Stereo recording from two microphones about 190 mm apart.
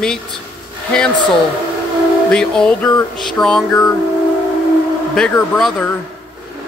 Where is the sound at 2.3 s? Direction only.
5° left (ahead or behind).